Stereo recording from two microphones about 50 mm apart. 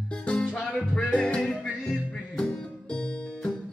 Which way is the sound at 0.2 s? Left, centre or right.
Left.